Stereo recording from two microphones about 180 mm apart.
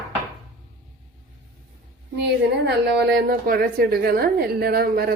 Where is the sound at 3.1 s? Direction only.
55° right (ahead or behind).